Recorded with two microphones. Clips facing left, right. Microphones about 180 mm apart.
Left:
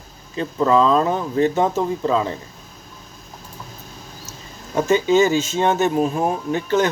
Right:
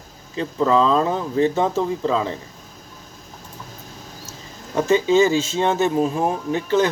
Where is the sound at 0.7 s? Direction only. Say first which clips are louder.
Left 2 dB; 30° right (ahead or behind).